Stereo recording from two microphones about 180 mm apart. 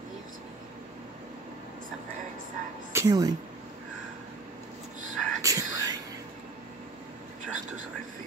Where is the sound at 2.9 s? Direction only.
20° right (ahead or behind).